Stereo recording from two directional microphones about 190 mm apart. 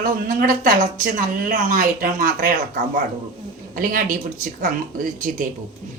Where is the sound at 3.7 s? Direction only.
45° right (ahead or behind).